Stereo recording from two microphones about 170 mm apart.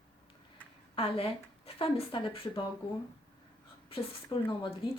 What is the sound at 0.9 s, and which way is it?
A woman's voice, 35° left (ahead or behind).